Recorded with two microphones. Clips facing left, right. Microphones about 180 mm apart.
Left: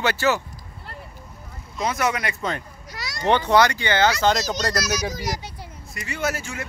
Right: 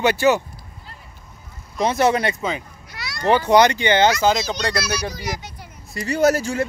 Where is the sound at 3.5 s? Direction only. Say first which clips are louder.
Right 6 dB; 20° right (ahead or behind).